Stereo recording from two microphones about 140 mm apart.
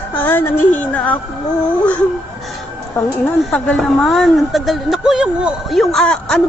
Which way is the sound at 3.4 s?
5° left (ahead or behind).